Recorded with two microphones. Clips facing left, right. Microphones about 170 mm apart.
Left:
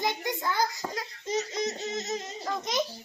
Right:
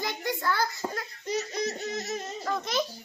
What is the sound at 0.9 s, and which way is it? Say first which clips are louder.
Laughter: even; 20° left (ahead or behind).